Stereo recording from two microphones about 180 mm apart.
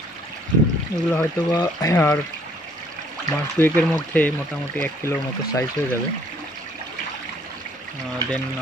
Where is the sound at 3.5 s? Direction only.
10° left (ahead or behind).